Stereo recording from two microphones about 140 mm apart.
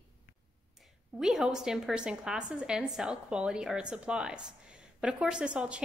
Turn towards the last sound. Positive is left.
turn(degrees=-10)  # may be behind; listen again after turning